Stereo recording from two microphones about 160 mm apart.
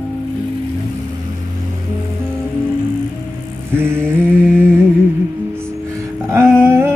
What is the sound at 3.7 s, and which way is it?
Mantra, 15° right (ahead or behind).